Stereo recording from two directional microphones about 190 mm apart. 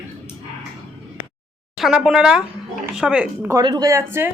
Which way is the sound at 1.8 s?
Centre (ahead or behind).